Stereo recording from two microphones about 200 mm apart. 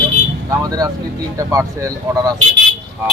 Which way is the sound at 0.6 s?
20° right (ahead or behind).